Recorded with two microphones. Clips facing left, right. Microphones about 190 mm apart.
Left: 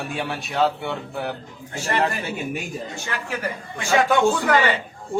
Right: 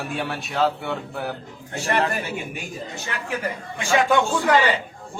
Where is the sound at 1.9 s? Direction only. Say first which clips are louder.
Even; 55° right (ahead or behind).